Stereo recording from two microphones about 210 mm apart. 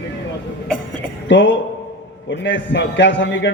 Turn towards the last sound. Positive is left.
turn(degrees=60)  # may be behind; listen again after turning